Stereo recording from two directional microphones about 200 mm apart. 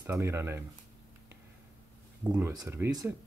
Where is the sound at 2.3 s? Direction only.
15° right (ahead or behind).